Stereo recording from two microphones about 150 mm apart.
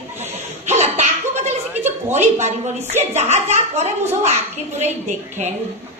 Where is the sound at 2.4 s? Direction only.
50° right (ahead or behind).